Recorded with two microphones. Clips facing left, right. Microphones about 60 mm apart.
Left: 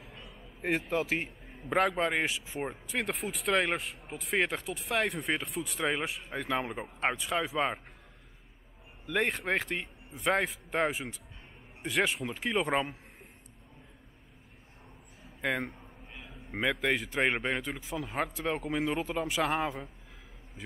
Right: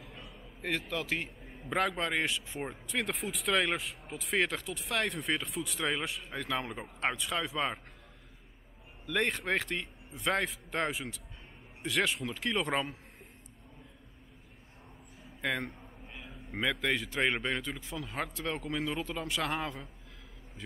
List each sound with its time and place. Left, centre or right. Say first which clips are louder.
0.0 s a sound: even; centre
0.6 s speech: left 5 dB; centre
1.6 s speech: left 4 dB; centre
9.0 s speech: left 1 dB; centre
15.2 s a sound: left 2 dB; centre
16.4 s speech: left 2 dB; centre